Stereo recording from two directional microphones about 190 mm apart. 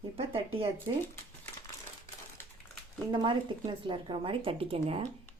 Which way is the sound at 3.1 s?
25° right (ahead or behind).